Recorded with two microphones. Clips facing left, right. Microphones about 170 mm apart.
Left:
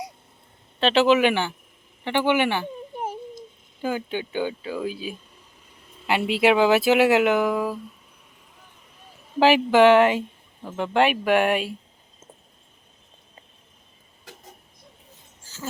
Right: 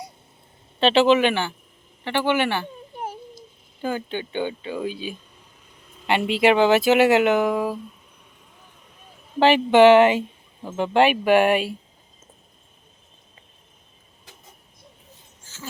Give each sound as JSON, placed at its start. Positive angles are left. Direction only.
{"t": 0.8, "sound": "speech", "side_deg": 0}
{"t": 3.8, "sound": "speech", "side_deg": 10}
{"t": 9.4, "sound": "speech", "side_deg": 10}
{"t": 15.4, "sound": "a sound", "side_deg": 40}